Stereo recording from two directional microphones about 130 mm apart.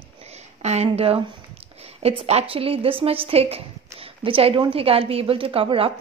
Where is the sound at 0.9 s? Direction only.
45° right (ahead or behind).